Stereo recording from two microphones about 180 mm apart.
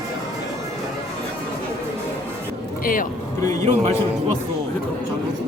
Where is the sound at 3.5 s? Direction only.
40° right (ahead or behind).